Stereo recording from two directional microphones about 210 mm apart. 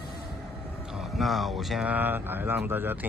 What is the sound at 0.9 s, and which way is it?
Speech, centre (ahead or behind).